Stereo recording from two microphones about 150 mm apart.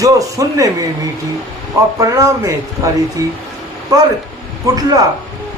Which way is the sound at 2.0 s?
20° right (ahead or behind).